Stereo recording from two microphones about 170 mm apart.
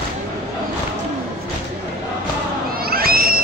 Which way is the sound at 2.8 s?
60° right (ahead or behind).